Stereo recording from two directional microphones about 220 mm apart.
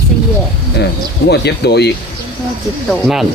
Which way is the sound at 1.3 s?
50° left (ahead or behind).